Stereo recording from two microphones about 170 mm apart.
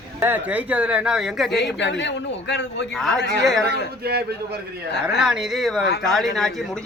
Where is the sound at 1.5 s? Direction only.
90° left.